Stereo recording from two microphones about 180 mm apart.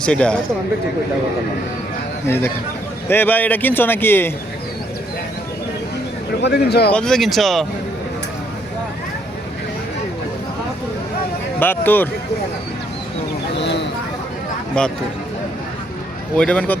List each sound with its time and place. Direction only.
0.0 s speech: 5° left (ahead or behind)
2.2 s a man's voice: 15° left (ahead or behind)
6.4 s a man's voice: 65° left (ahead or behind)
6.9 s speech: 5° left (ahead or behind)
11.6 s a man's voice: 10° left (ahead or behind)
16.4 s a man's voice: 5° left (ahead or behind)